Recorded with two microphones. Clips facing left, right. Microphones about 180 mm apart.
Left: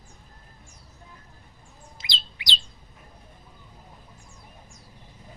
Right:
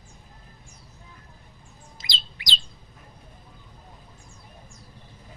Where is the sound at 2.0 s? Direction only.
40° right (ahead or behind).